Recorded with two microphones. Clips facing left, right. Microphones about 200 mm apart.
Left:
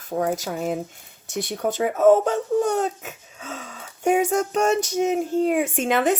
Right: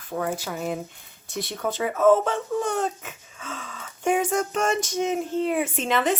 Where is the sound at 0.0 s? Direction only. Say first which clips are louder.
Left 4 dB; 40° left (ahead or behind).